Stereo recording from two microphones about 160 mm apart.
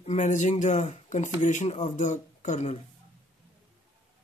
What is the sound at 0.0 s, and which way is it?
Speech, 45° left (ahead or behind).